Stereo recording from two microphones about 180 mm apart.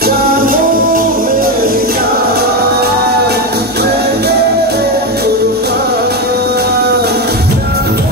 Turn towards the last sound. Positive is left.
turn(degrees=-65)  # may be behind; listen again after turning